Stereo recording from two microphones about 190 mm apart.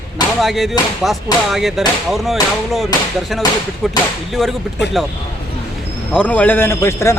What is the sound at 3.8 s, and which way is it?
Speech, centre (ahead or behind).